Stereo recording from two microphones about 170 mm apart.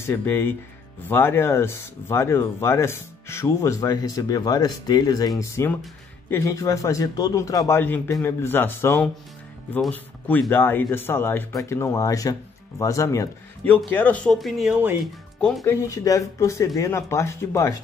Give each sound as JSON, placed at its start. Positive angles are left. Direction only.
{"t": 0.0, "sound": "speech", "side_deg": 15}
{"t": 15.6, "sound": "speech", "side_deg": 20}